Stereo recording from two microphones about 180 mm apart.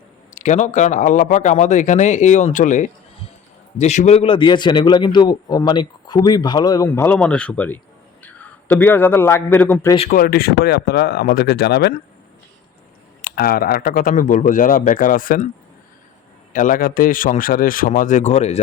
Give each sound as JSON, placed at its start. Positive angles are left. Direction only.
{"t": 0.3, "sound": "a man's voice", "side_deg": 40}
{"t": 10.1, "sound": "speech", "side_deg": 55}
{"t": 13.2, "sound": "speech", "side_deg": 55}
{"t": 16.5, "sound": "speech", "side_deg": 45}